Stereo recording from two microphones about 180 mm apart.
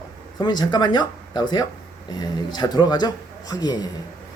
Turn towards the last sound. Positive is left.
turn(degrees=20)  # may be behind; listen again after turning